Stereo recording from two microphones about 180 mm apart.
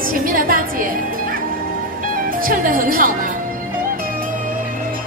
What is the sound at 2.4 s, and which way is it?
Music, 50° right (ahead or behind).